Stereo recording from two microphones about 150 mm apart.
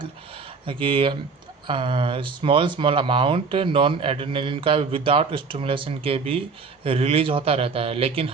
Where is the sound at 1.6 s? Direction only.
35° right (ahead or behind).